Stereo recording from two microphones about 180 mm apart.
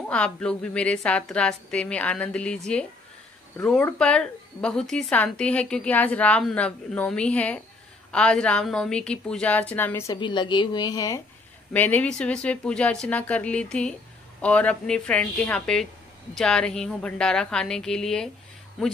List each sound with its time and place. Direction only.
0.1 s a woman's voice: 5° left (ahead or behind)
10.1 s a woman's voice: 25° left (ahead or behind)
11.7 s a woman's voice: 10° left (ahead or behind)